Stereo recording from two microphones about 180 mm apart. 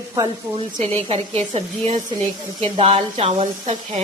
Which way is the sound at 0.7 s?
35° right (ahead or behind).